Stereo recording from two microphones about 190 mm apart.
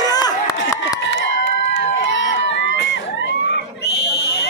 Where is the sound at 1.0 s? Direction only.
75° left (ahead or behind).